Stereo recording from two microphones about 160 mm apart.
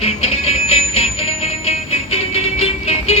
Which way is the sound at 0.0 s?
40° left (ahead or behind).